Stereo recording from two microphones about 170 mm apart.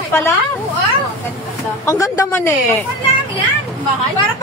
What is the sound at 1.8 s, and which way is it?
Speech, 20° left (ahead or behind).